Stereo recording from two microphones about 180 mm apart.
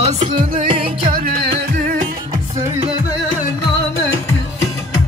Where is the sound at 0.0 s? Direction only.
35° right (ahead or behind).